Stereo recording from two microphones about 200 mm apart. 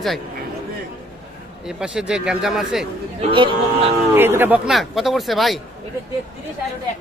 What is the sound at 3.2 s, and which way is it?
Speech, 25° right (ahead or behind).